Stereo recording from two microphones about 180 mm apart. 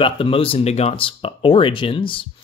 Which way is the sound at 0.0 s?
30° left (ahead or behind).